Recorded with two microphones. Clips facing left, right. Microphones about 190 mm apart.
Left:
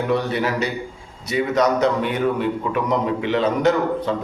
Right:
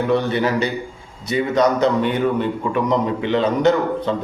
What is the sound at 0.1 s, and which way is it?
A man's voice, 5° left (ahead or behind).